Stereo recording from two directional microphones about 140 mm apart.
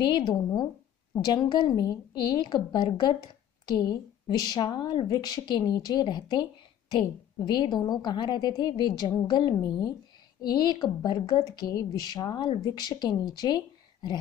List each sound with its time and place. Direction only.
0.0 s a woman's voice: 30° left (ahead or behind)
7.4 s a woman's voice: 35° left (ahead or behind)